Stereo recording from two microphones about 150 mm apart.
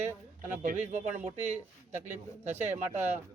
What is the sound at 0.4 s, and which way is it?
Speech, 60° right (ahead or behind).